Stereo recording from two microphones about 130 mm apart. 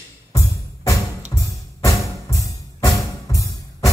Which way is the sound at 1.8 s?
25° left (ahead or behind).